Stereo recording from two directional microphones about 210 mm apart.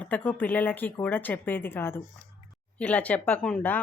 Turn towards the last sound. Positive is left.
turn(degrees=5)  # may be behind; listen again after turning